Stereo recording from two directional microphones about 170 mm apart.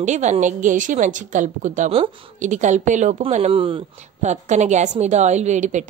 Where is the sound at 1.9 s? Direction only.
30° right (ahead or behind).